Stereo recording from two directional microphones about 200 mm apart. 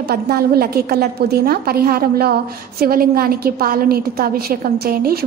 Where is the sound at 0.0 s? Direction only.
50° right (ahead or behind).